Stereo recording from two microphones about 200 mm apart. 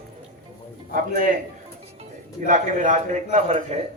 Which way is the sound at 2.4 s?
40° right (ahead or behind).